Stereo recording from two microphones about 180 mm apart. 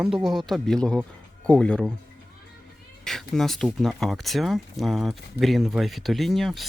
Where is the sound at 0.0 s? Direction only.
5° right (ahead or behind).